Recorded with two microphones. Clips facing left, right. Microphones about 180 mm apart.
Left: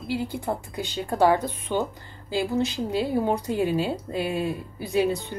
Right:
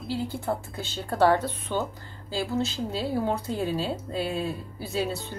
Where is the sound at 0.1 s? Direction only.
15° left (ahead or behind).